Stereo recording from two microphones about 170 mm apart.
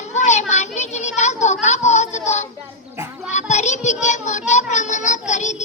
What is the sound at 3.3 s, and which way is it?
Child singing, 45° left (ahead or behind).